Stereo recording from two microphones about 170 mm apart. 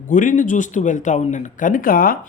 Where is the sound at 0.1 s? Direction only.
50° left (ahead or behind).